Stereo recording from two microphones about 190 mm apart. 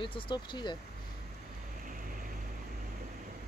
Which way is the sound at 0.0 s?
25° left (ahead or behind).